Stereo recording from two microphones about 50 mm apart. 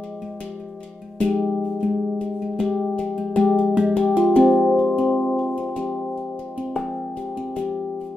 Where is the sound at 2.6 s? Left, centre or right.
Centre.